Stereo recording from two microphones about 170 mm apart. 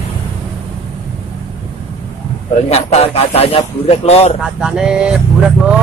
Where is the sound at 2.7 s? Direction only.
35° left (ahead or behind).